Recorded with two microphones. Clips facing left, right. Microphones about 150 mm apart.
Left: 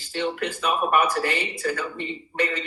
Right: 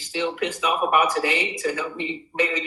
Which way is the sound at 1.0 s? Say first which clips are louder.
Right 1 dB; 45° right (ahead or behind).